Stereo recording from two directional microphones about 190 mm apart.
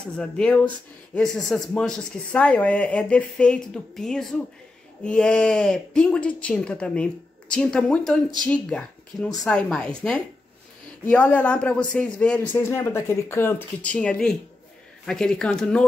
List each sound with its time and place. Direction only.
0.2 s a man's voice: 5° left (ahead or behind)